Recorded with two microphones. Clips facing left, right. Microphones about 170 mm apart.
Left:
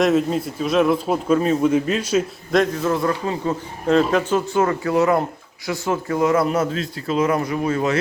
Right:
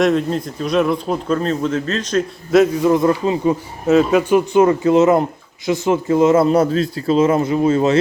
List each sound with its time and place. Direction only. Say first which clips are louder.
0.0 s speech: right 1 dB; 5° left (ahead or behind)
2.5 s a man's voice: right 7 dB; 10° right (ahead or behind)
3.8 s speech: right 4 dB; 5° right (ahead or behind); by 7.9 s 25° right (ahead or behind)